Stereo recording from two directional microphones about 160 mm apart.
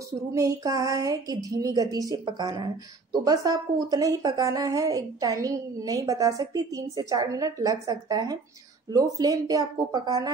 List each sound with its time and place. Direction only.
0.3 s a woman's voice: 20° right (ahead or behind)